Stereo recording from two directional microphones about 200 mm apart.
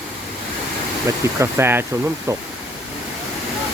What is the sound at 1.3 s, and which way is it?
Speech, 15° right (ahead or behind).